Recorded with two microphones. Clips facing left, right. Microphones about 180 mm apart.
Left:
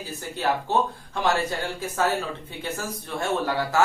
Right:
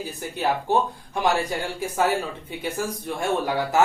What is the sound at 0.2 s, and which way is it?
Speech, 15° right (ahead or behind).